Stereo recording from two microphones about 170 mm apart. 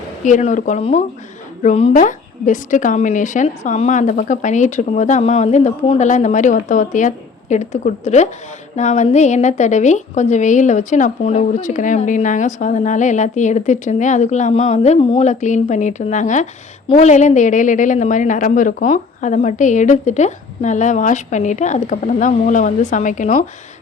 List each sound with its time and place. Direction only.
0.3 s a woman's voice: 45° left (ahead or behind)
1.9 s a woman's voice: 50° left (ahead or behind)